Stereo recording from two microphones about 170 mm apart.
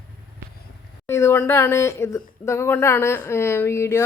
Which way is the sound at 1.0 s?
15° left (ahead or behind).